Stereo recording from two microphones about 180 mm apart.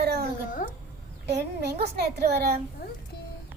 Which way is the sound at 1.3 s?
65° right (ahead or behind).